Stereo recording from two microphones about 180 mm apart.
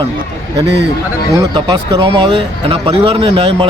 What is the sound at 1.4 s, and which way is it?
Speech, 20° right (ahead or behind).